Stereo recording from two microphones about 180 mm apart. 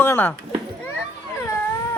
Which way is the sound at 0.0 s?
10° left (ahead or behind).